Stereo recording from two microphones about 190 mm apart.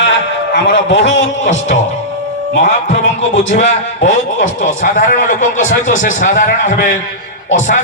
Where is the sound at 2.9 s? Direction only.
40° left (ahead or behind).